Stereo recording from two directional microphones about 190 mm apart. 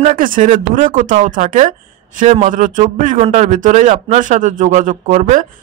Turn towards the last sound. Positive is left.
turn(degrees=-40)  # may be behind; listen again after turning